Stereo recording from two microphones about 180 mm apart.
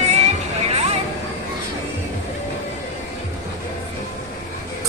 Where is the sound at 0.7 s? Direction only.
35° right (ahead or behind).